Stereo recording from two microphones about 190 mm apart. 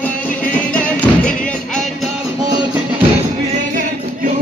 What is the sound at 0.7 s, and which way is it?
Music, 5° left (ahead or behind).